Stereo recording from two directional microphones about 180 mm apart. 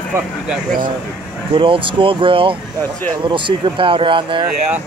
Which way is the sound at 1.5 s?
30° right (ahead or behind).